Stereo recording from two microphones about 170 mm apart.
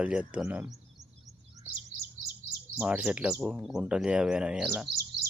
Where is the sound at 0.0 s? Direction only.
5° right (ahead or behind).